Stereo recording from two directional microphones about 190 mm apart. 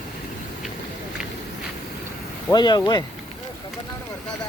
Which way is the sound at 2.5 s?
20° left (ahead or behind).